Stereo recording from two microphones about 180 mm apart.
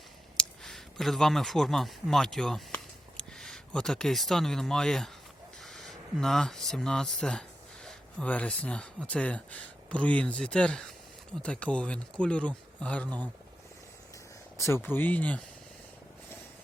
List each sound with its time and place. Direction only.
0.3 s speech: centre (ahead or behind)
13.1 s speech: 20° right (ahead or behind)
14.6 s speech: 15° left (ahead or behind)